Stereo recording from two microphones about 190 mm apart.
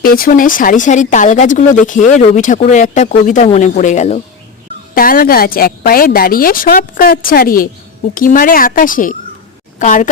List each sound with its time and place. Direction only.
0.0 s a woman's voice: 50° left (ahead or behind)
4.9 s a woman's voice: 50° left (ahead or behind)